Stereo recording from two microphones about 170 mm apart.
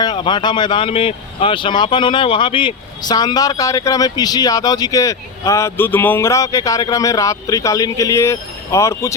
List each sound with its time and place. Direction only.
0.0 s speech: 25° left (ahead or behind)